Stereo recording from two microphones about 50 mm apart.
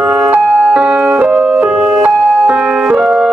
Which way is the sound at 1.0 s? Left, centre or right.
Right.